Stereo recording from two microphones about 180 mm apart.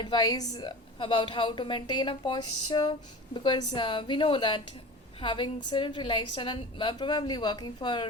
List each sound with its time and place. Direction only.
0.0 s a woman's voice: 25° left (ahead or behind)